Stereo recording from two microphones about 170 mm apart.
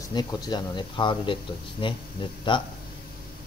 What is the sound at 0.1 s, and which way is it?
Speech, 25° left (ahead or behind).